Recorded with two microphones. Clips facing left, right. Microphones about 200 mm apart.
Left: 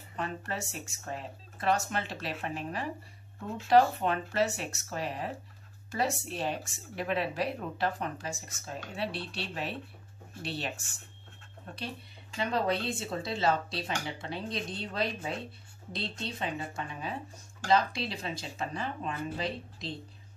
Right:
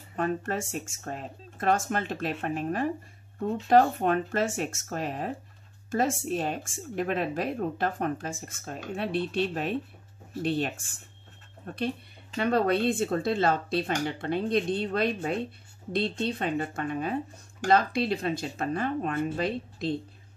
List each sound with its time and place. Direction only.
0.1 s speech: 50° right (ahead or behind)